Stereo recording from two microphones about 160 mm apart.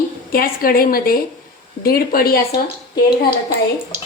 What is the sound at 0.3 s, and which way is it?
A woman's voice, 65° left (ahead or behind).